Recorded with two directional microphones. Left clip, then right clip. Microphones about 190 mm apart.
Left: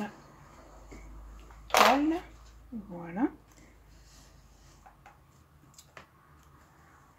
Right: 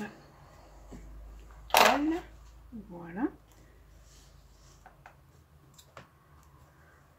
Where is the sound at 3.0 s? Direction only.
35° left (ahead or behind).